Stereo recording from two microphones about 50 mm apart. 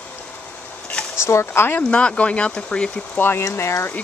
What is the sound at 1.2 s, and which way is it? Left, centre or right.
Speech, left.